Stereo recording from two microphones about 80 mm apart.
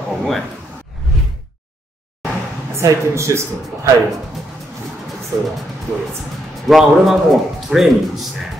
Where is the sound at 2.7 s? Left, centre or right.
Right.